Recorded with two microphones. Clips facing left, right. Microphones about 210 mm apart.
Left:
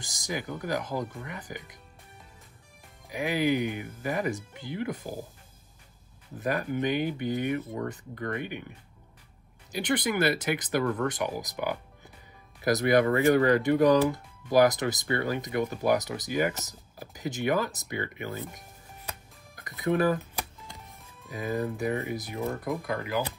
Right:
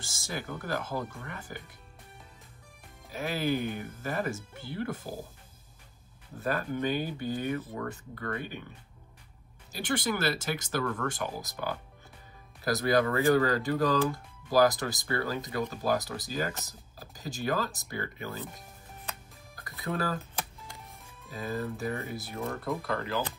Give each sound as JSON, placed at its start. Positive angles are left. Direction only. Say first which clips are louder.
{"t": 0.0, "sound": "speech", "louder": "left 3 dB", "side_deg": 15}
{"t": 3.1, "sound": "speech", "louder": "left 4 dB", "side_deg": 15}
{"t": 6.4, "sound": "speech", "louder": "left 2 dB", "side_deg": 15}
{"t": 9.7, "sound": "speech", "louder": "left 3 dB", "side_deg": 20}
{"t": 19.5, "sound": "music", "louder": "left 7 dB", "side_deg": 20}
{"t": 21.3, "sound": "speech", "louder": "left 4 dB", "side_deg": 15}